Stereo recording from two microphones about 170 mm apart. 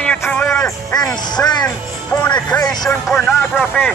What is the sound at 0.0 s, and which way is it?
Music, 5° left (ahead or behind).